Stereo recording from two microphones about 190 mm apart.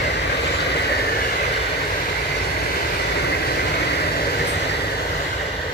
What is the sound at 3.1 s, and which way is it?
Vehicle, 60° left (ahead or behind).